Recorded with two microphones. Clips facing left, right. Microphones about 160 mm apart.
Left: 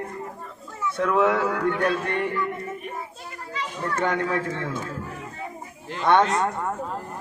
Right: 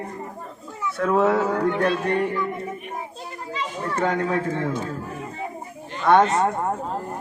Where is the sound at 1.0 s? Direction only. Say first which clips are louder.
Right 2 dB; 35° right (ahead or behind).